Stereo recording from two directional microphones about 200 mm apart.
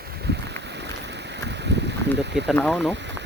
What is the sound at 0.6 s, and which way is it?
Boat, 60° right (ahead or behind).